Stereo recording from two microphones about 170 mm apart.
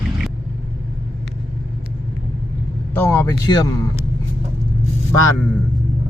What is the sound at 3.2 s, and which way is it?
Speech, 20° left (ahead or behind).